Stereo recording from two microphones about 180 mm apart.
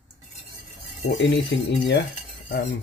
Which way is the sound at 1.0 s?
75° left (ahead or behind).